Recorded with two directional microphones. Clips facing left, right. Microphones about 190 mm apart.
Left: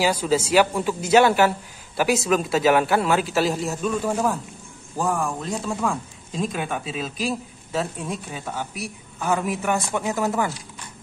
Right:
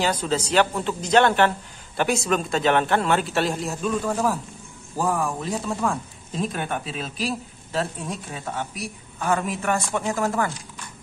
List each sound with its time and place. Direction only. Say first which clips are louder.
0.0 s speech: left 3 dB; 10° left (ahead or behind)